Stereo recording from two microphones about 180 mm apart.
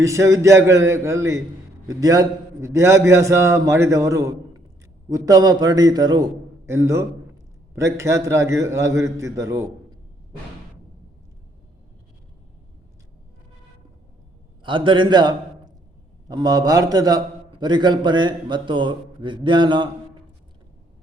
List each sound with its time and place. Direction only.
0.0 s a man's voice: 15° right (ahead or behind)
14.6 s a man's voice: 25° right (ahead or behind)